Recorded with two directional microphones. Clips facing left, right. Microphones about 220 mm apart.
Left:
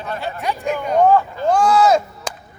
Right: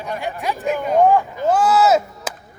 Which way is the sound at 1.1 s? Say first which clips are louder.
Left 1 dB; 15° right (ahead or behind).